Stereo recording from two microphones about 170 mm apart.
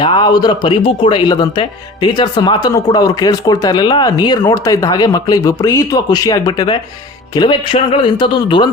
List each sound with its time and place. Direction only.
0.0 s speech: 25° left (ahead or behind)